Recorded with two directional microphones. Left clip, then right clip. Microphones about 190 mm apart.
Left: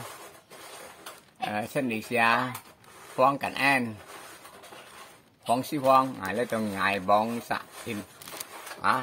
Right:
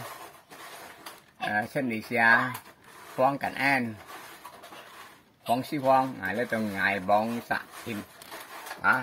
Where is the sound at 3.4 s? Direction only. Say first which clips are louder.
Left 1 dB; 10° left (ahead or behind).